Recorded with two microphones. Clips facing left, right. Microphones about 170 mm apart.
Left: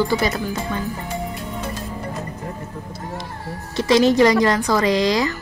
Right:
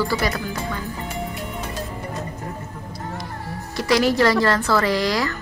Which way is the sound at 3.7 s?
25° left (ahead or behind).